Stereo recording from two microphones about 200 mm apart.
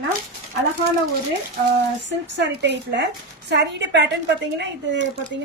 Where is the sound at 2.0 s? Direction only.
60° right (ahead or behind).